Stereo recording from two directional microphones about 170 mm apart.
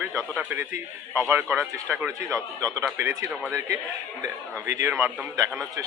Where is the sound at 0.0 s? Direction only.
15° right (ahead or behind).